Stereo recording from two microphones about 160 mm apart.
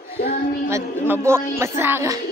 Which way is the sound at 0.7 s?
15° right (ahead or behind).